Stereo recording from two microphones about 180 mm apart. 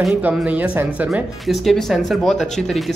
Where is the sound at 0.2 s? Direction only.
5° right (ahead or behind).